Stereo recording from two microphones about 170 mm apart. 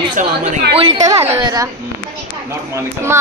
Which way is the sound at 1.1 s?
25° right (ahead or behind).